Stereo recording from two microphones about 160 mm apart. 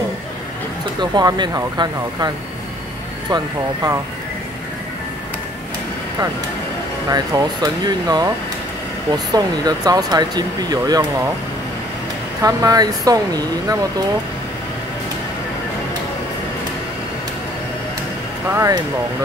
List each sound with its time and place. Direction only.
1.1 s speech: 25° right (ahead or behind)
7.1 s speech: 25° right (ahead or behind)
12.4 s speech: 20° right (ahead or behind)
18.5 s speech: 20° right (ahead or behind)